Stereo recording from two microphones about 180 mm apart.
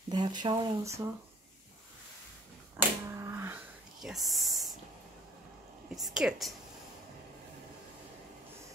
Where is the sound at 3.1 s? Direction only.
15° right (ahead or behind).